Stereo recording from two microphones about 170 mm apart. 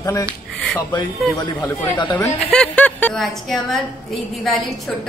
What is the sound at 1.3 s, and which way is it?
A woman's voice, 20° left (ahead or behind).